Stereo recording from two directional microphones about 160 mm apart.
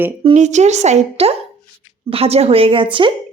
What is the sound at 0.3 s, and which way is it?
A woman's voice, 45° right (ahead or behind).